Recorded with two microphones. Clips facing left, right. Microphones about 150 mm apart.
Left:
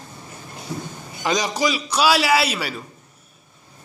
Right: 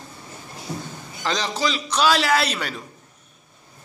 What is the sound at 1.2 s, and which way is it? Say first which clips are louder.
A man's voice: left 3 dB; 15° left (ahead or behind).